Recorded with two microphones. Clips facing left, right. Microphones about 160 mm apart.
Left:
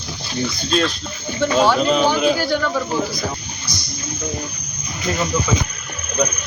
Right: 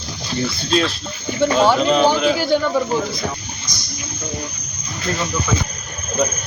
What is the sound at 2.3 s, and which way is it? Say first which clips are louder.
Speech: right 2 dB; 15° right (ahead or behind).